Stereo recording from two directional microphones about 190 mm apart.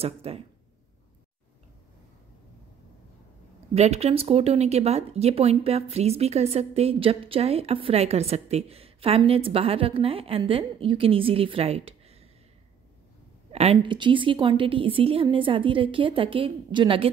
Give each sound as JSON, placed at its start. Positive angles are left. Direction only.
{"t": 0.0, "sound": "speech", "side_deg": -30}
{"t": 3.7, "sound": "speech", "side_deg": -35}
{"t": 13.5, "sound": "a woman's voice", "side_deg": -35}